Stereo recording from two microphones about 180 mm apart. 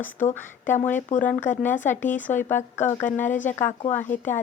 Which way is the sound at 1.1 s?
45° left (ahead or behind).